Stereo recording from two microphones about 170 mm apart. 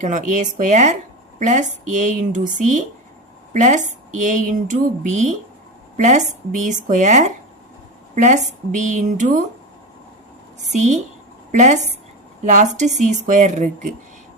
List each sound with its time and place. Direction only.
0.0 s speech: 45° right (ahead or behind)
10.6 s speech: 45° right (ahead or behind)